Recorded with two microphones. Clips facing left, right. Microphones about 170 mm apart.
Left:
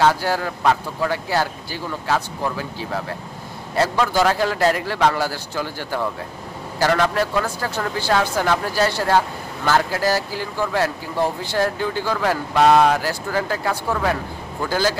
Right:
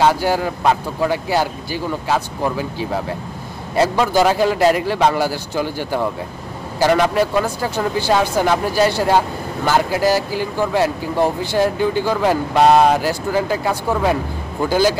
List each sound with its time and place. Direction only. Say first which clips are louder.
0.0 s speech: right 3 dB; 15° right (ahead or behind)